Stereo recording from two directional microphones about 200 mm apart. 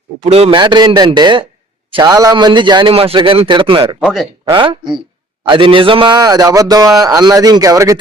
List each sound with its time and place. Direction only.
0.2 s speech: 30° right (ahead or behind)
4.0 s speech: centre (ahead or behind)
4.4 s speech: 25° right (ahead or behind)